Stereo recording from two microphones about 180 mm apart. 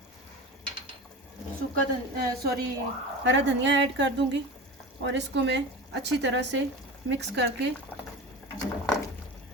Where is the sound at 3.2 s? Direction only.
85° right.